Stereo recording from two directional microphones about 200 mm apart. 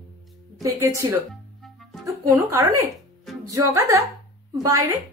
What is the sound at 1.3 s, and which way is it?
Music, centre (ahead or behind).